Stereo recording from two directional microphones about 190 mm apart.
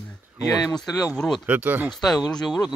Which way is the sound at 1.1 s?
Centre (ahead or behind).